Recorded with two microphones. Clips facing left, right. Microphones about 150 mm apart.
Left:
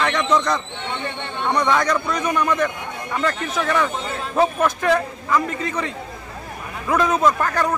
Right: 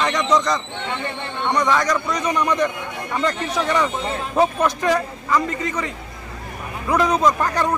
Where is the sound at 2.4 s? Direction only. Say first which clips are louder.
Right 1 dB; 15° right (ahead or behind).